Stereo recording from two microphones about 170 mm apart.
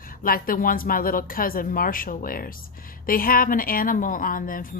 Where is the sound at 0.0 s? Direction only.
55° left (ahead or behind).